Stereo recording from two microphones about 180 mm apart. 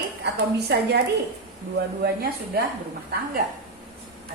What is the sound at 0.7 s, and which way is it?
Speech, 65° right (ahead or behind).